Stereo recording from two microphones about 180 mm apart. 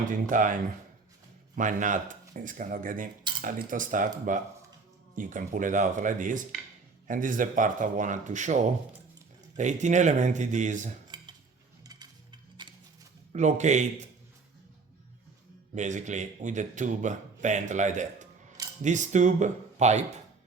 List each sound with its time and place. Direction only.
0.1 s a man's voice: 45° right (ahead or behind)
5.1 s a man's voice: 45° right (ahead or behind)
11.1 s cutlery: 25° right (ahead or behind)
11.8 s music: 20° right (ahead or behind)
13.3 s a man's voice: 40° right (ahead or behind)
15.7 s a man's voice: 40° right (ahead or behind)